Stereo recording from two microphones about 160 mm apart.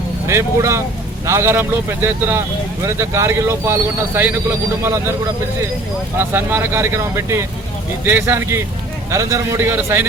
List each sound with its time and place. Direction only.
0.3 s speech: 15° right (ahead or behind)
6.1 s a man's voice: 15° right (ahead or behind)